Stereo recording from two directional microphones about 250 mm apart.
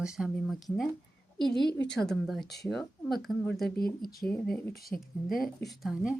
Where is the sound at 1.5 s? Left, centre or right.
Centre.